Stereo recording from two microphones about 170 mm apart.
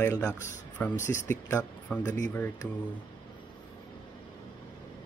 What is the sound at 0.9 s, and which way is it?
Speech, 45° left (ahead or behind).